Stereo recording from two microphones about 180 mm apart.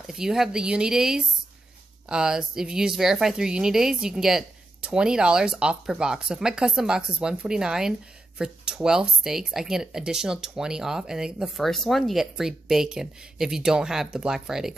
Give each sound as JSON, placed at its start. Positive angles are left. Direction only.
{"t": 0.0, "sound": "speech", "side_deg": 0}